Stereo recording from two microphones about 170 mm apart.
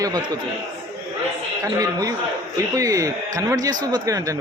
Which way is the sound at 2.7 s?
20° right (ahead or behind).